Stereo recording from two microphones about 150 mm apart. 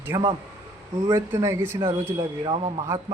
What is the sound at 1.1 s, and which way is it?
Speech, 20° right (ahead or behind).